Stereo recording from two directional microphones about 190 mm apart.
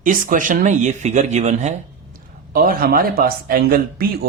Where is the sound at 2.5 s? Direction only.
50° right (ahead or behind).